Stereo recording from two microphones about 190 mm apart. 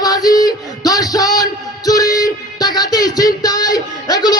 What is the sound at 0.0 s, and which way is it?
Music, 20° left (ahead or behind).